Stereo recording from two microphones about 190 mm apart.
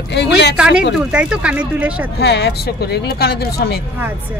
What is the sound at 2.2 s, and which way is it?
A woman's voice, 60° left (ahead or behind).